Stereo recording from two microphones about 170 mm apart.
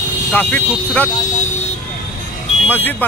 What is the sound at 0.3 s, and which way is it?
Speech, 10° left (ahead or behind).